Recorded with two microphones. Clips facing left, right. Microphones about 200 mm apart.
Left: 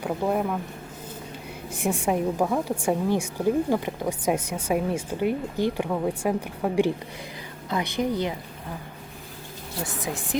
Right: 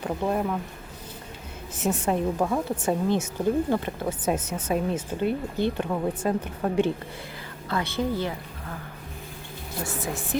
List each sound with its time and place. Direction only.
0.0 s speech: 5° left (ahead or behind)
1.7 s speech: 10° left (ahead or behind)
9.8 s speech: 15° left (ahead or behind)